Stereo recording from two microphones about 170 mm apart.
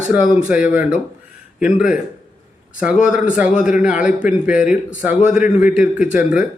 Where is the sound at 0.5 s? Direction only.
5° right (ahead or behind).